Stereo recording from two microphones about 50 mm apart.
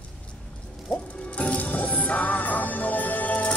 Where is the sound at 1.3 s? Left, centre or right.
Left.